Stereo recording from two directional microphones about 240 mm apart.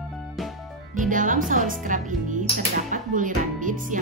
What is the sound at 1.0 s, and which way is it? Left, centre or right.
Music, right.